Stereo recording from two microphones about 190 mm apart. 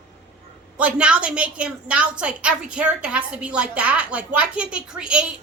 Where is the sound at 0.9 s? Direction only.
5° right (ahead or behind).